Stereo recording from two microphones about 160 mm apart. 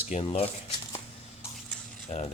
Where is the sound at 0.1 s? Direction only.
35° left (ahead or behind).